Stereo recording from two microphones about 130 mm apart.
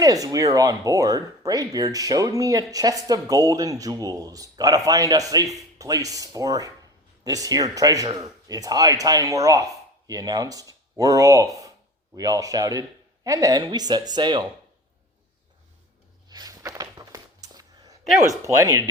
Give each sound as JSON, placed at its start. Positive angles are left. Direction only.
{"t": 0.0, "sound": "speech", "side_deg": -25}
{"t": 16.3, "sound": "a sound", "side_deg": -30}
{"t": 18.3, "sound": "speech", "side_deg": -25}